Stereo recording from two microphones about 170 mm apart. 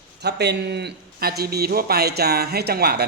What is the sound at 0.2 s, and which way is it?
A man's voice, 80° right.